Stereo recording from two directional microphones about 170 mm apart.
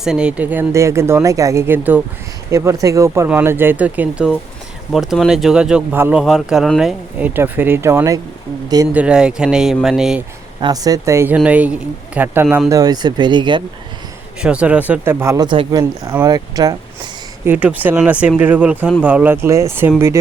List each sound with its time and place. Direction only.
0.0 s speech: 5° right (ahead or behind)
10.6 s speech: 20° right (ahead or behind)
14.4 s speech: 5° right (ahead or behind)
17.4 s speech: 10° right (ahead or behind)